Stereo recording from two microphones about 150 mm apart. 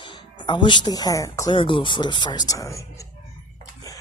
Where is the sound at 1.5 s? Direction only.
35° left (ahead or behind).